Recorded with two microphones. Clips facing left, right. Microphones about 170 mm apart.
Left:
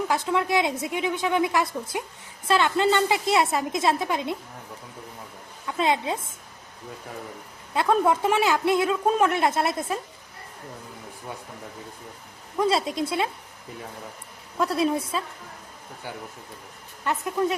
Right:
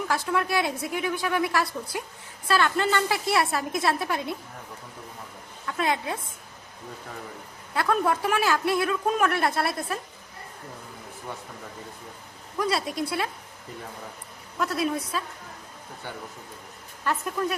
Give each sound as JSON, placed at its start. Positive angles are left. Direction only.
{"t": 0.1, "sound": "a woman's voice", "side_deg": 20}
{"t": 5.6, "sound": "a woman's voice", "side_deg": 20}
{"t": 7.7, "sound": "a woman's voice", "side_deg": 20}
{"t": 12.5, "sound": "a woman's voice", "side_deg": 25}
{"t": 14.6, "sound": "a woman's voice", "side_deg": 30}